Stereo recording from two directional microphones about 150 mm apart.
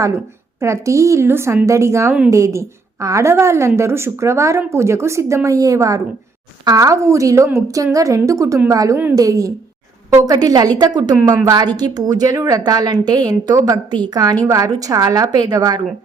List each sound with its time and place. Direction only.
0.6 s a woman's voice: 20° right (ahead or behind)